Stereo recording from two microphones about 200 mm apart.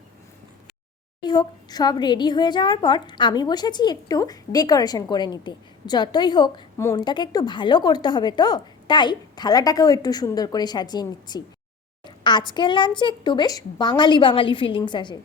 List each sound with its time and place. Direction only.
1.2 s a woman's voice: 20° left (ahead or behind)